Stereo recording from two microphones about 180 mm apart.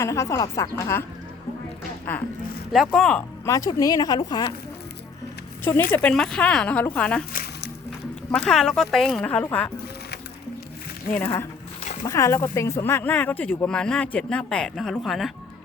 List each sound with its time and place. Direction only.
0.0 s speech: 15° left (ahead or behind)
2.7 s speech: centre (ahead or behind)
3.4 s speech: 20° left (ahead or behind)
5.9 s speech: 5° left (ahead or behind)
8.3 s speech: 5° left (ahead or behind)
11.1 s speech: 10° left (ahead or behind)